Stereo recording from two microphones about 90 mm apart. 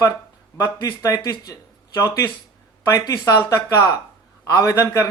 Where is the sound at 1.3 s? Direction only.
50° left (ahead or behind).